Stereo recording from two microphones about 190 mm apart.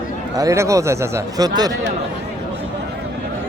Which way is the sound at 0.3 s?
15° right (ahead or behind).